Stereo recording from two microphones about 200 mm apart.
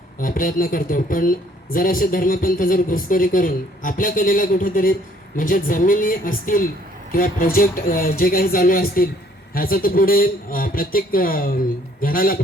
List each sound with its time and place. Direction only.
0.2 s speech: 45° left (ahead or behind)